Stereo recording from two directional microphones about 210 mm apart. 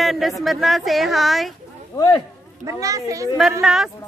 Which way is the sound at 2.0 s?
20° left (ahead or behind).